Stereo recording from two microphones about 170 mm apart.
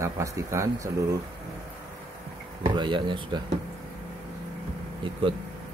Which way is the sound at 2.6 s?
25° right (ahead or behind).